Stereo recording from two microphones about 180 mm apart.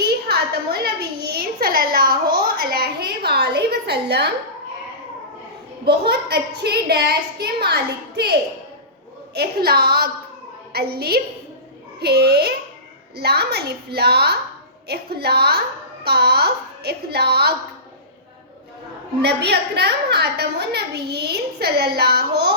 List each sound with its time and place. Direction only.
0.0 s a sound: 60° right (ahead or behind)
5.8 s a woman's voice: 65° right (ahead or behind)
19.2 s a woman's voice: 65° right (ahead or behind)